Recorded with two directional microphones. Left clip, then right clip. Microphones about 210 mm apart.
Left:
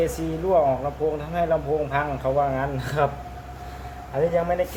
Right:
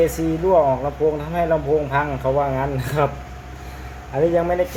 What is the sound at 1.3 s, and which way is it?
Speech, 35° right (ahead or behind).